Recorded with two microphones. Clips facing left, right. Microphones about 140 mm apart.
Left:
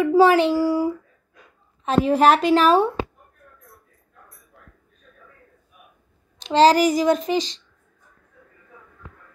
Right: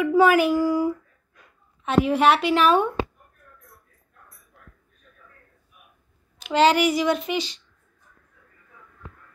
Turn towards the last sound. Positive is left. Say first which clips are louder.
# left 4 dB
turn(degrees=35)  # may be behind; listen again after turning